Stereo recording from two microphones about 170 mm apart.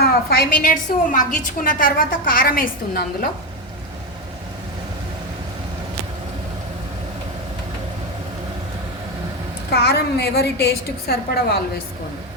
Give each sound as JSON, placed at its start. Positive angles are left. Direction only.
{"t": 0.0, "sound": "a sound", "side_deg": 65}
{"t": 0.6, "sound": "a woman's voice", "side_deg": 50}
{"t": 9.7, "sound": "a woman's voice", "side_deg": 70}